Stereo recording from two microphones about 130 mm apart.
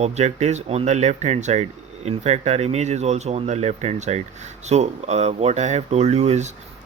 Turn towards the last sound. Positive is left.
turn(degrees=-60)  # may be behind; listen again after turning